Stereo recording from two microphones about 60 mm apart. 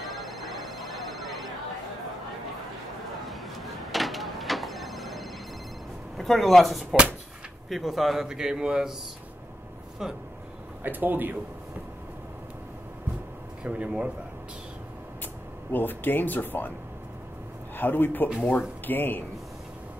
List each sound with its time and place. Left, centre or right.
0.0 s a sound: centre
3.3 s telephone bell ringing: centre
6.1 s a man's voice: centre
10.8 s speech: right
13.7 s speech: right
15.7 s speech: left
17.7 s a man's voice: left